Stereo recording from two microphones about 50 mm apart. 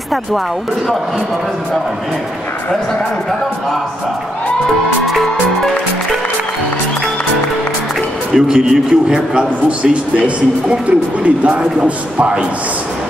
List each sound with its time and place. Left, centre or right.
5.0 s music: centre
8.3 s a man's voice: centre; by 12.4 s right